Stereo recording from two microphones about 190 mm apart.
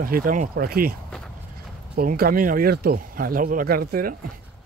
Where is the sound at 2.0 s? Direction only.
50° right (ahead or behind).